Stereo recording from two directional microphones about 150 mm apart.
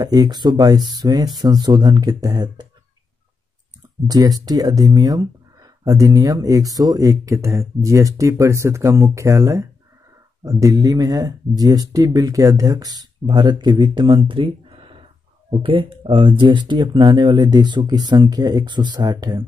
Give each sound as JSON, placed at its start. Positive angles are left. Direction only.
{"t": 0.0, "sound": "speech", "side_deg": -25}
{"t": 4.1, "sound": "speech", "side_deg": -25}